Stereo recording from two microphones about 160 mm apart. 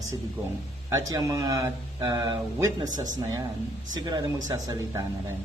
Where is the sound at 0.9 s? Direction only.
20° right (ahead or behind).